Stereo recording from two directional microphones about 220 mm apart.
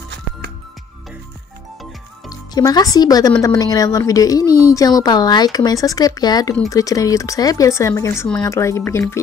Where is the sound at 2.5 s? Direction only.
15° left (ahead or behind).